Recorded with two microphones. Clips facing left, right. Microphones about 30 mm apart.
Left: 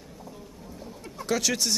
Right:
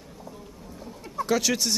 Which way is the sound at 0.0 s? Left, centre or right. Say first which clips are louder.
Right 1 dB; centre.